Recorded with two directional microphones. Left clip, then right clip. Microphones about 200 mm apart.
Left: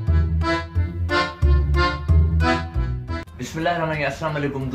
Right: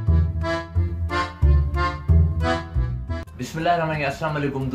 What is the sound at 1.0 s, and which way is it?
Music, centre (ahead or behind).